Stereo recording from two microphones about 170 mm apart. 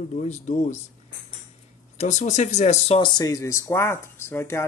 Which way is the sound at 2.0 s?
45° left (ahead or behind).